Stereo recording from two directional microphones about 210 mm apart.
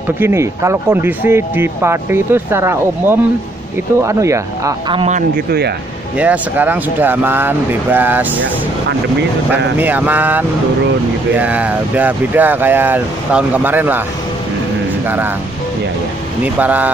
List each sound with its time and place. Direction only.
0.2 s speech: 15° right (ahead or behind); by 5.4 s 35° right (ahead or behind)
6.1 s speech: 5° right (ahead or behind)
9.8 s speech: 10° right (ahead or behind)
15.0 s speech: 10° right (ahead or behind)
16.5 s speech: 10° right (ahead or behind)